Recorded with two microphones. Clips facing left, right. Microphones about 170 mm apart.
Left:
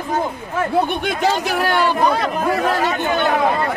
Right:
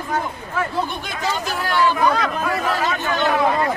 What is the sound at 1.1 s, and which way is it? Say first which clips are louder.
Speech: left 6 dB; 65° left (ahead or behind).